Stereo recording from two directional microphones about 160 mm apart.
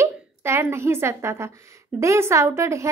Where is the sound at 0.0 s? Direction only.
15° right (ahead or behind).